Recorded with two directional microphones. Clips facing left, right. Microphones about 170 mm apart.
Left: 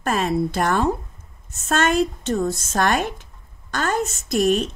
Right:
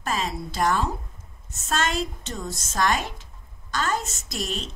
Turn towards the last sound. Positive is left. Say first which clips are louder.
# left 13 dB
turn(degrees=55)  # may be behind; listen again after turning